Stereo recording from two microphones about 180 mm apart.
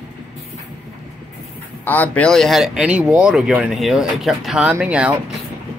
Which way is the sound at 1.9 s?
10° left (ahead or behind).